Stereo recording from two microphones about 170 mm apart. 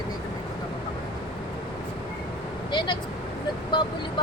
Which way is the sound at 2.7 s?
25° left (ahead or behind).